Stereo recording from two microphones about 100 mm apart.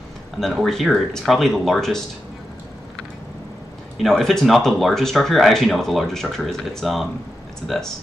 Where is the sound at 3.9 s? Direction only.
Centre (ahead or behind).